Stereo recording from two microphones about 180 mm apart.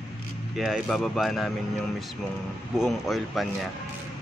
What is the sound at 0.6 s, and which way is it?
Speech, centre (ahead or behind).